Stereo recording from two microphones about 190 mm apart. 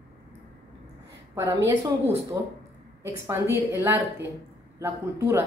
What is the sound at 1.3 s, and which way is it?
Speech, 15° right (ahead or behind).